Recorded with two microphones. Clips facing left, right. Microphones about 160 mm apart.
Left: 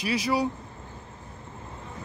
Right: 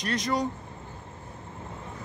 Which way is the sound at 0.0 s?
5° left (ahead or behind).